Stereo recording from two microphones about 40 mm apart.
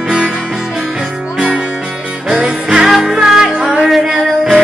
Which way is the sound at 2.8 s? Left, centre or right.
Centre.